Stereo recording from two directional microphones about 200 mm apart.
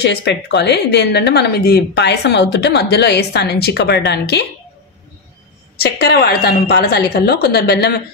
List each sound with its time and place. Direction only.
0.0 s speech: 60° left (ahead or behind)
5.8 s a woman's voice: 55° left (ahead or behind)